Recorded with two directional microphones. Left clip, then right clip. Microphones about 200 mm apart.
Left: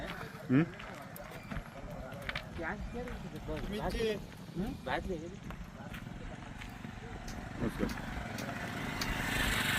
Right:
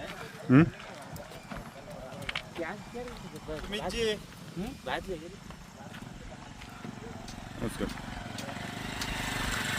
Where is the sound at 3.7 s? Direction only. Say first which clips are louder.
Right 4 dB; 50° right (ahead or behind).